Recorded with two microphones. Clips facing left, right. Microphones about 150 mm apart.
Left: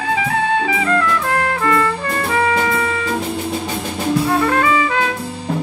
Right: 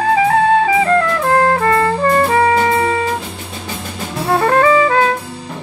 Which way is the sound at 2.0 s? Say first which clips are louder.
Right 6 dB; 40° right (ahead or behind).